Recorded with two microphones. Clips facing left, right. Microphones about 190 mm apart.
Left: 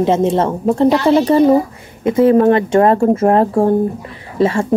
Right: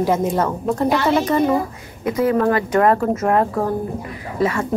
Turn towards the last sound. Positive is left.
turn(degrees=30)  # may be behind; listen again after turning